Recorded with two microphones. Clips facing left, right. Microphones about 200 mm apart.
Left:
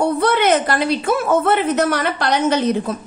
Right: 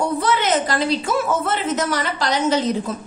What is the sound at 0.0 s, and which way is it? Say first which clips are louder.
A woman's voice: left 4 dB; 60° left (ahead or behind).